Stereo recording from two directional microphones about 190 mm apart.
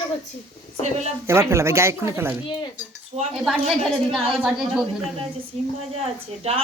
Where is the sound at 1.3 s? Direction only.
15° right (ahead or behind).